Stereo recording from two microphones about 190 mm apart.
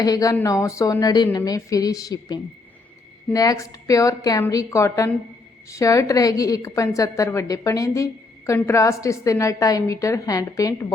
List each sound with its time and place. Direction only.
0.0 s a woman's voice: 20° left (ahead or behind)